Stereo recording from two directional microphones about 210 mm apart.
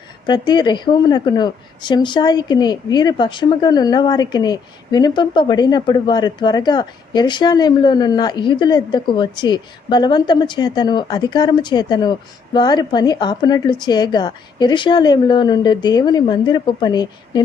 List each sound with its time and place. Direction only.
0.3 s a woman's voice: 20° left (ahead or behind)